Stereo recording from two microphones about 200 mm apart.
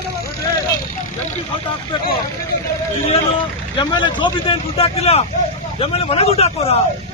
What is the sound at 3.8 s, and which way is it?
Speech, 20° left (ahead or behind).